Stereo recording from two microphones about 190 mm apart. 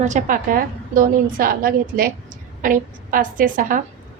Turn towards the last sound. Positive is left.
turn(degrees=-45)  # may be behind; listen again after turning